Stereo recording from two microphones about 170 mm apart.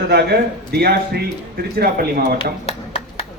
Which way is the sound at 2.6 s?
35° left (ahead or behind).